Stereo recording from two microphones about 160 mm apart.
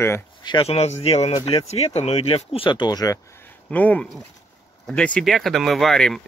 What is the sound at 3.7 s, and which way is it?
Speech, 10° left (ahead or behind).